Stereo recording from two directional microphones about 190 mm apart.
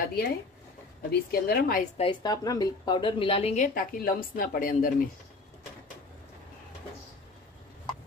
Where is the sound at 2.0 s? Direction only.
25° left (ahead or behind).